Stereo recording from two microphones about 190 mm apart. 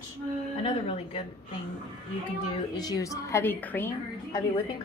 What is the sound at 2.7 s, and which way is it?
A woman's voice, 20° left (ahead or behind).